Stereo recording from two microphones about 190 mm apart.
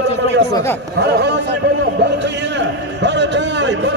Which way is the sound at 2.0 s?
65° right (ahead or behind).